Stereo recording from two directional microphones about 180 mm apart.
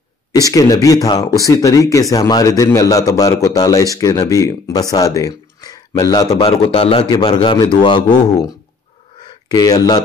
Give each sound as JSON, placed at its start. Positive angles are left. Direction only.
{"t": 0.5, "sound": "a man's voice", "side_deg": 20}
{"t": 6.4, "sound": "a man's voice", "side_deg": 30}
{"t": 9.5, "sound": "a man's voice", "side_deg": 20}